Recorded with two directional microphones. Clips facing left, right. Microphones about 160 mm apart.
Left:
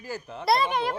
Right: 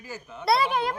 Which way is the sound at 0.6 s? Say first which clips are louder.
Right 1 dB; 5° right (ahead or behind).